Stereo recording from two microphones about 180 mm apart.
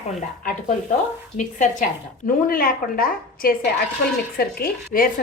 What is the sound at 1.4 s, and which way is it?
A woman's voice, 45° left (ahead or behind).